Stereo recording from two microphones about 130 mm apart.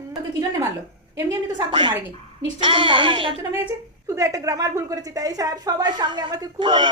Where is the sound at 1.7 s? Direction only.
40° right (ahead or behind).